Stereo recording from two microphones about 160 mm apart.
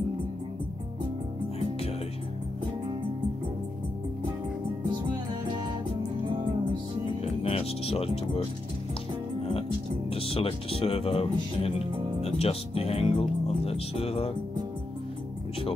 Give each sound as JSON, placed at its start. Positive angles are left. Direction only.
{"t": 7.4, "sound": "speech", "side_deg": 40}
{"t": 10.1, "sound": "speech", "side_deg": 35}